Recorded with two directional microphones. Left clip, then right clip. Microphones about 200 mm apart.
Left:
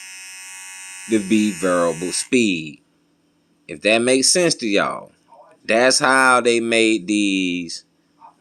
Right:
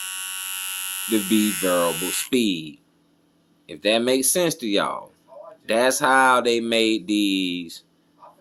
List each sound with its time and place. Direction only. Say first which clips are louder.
1.4 s hum: left 2 dB; 20° right (ahead or behind)
1.6 s speech: left 3 dB; 25° left (ahead or behind)
3.7 s speech: left 4 dB; 25° left (ahead or behind)